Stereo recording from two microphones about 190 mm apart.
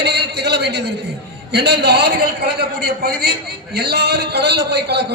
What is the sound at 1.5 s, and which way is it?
A man's voice, 60° right (ahead or behind).